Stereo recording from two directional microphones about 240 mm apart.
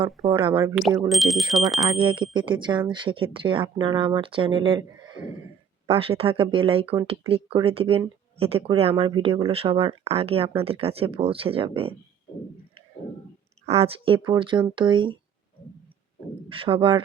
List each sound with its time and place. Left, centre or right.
0.2 s speech: right
0.8 s speech: centre
2.0 s speech: right
13.7 s speech: right
16.5 s speech: right